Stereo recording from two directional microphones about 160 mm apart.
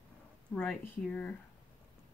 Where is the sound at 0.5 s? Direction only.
5° left (ahead or behind).